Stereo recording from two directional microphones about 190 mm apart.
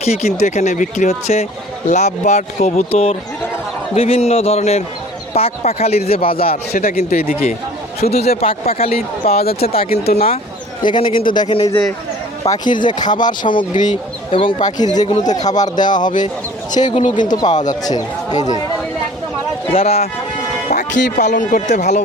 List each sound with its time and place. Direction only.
0.0 s speech: 35° left (ahead or behind)
6.7 s speech: 50° left (ahead or behind)
8.2 s speech: 35° left (ahead or behind)
9.4 s speech: 55° left (ahead or behind)
9.6 s speech: 30° left (ahead or behind)
11.7 s speech: 15° left (ahead or behind)
12.5 s speech: 25° left (ahead or behind)
17.4 s speech: 35° left (ahead or behind)
17.7 s speech: 20° left (ahead or behind)
19.7 s speech: 30° left (ahead or behind)
21.2 s speech: 40° left (ahead or behind)